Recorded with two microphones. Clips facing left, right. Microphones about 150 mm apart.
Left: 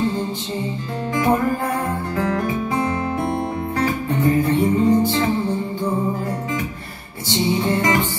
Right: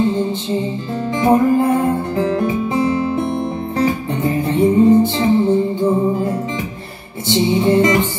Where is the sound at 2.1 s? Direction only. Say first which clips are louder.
Right 4 dB; 25° right (ahead or behind).